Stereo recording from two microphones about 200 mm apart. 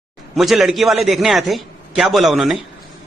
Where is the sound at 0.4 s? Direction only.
Centre (ahead or behind).